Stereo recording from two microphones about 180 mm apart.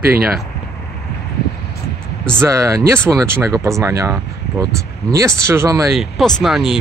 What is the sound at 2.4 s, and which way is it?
Speech, 15° right (ahead or behind).